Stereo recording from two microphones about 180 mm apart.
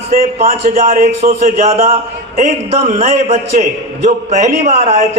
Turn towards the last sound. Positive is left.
turn(degrees=-40)  # may be behind; listen again after turning